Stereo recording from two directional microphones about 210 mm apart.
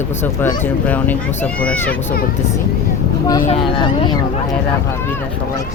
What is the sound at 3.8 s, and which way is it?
Speech, 20° left (ahead or behind).